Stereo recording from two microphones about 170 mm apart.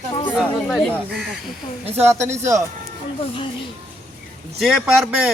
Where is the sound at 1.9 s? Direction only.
15° right (ahead or behind).